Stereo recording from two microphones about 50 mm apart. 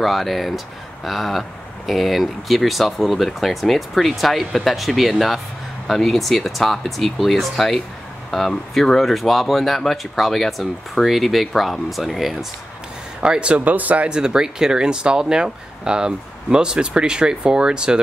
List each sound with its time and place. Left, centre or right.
0.0 s speech: centre
13.2 s speech: right
13.7 s speech: right
14.0 s speech: centre